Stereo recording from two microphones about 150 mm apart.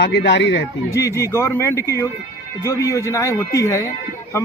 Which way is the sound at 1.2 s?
20° left (ahead or behind).